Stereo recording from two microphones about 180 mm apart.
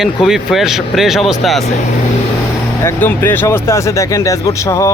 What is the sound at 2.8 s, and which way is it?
Speech, 10° left (ahead or behind).